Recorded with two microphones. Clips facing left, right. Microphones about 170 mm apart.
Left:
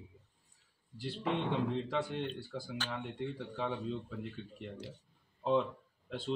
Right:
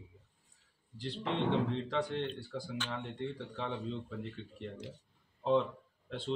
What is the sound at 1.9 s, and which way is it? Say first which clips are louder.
Speech: right 1 dB; 5° left (ahead or behind).